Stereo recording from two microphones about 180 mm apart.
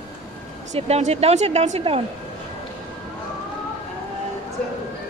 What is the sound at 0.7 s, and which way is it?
Speech, 35° right (ahead or behind).